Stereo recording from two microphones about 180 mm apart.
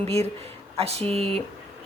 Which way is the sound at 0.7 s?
35° right (ahead or behind).